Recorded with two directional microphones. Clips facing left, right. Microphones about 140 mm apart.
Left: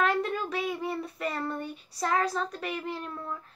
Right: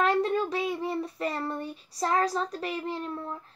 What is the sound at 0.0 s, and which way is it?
Child singing, 30° right (ahead or behind).